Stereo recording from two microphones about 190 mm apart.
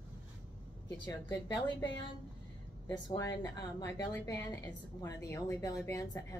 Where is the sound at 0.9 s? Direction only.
20° left (ahead or behind).